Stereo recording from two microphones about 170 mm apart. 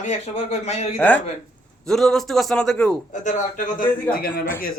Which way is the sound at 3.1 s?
45° left (ahead or behind).